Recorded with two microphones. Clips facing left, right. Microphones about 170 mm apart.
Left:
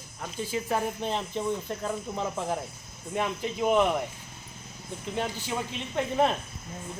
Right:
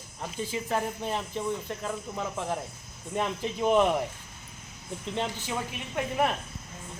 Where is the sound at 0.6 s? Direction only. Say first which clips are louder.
Left 1 dB; 15° left (ahead or behind).